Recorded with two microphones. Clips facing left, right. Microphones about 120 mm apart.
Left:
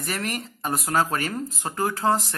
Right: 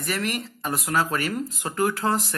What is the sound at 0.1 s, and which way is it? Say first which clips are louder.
Speech: right 2 dB; 40° left (ahead or behind).